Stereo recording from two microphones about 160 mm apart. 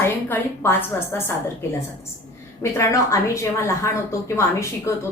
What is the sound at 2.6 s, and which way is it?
A woman's voice, 20° left (ahead or behind).